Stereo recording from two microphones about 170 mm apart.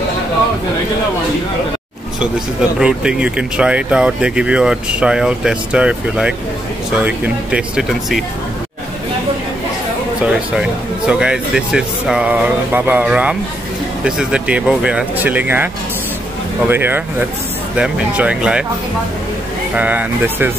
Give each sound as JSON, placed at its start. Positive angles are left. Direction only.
{"t": 2.8, "sound": "speech", "side_deg": -5}
{"t": 10.6, "sound": "speech", "side_deg": -5}
{"t": 19.7, "sound": "speech", "side_deg": -10}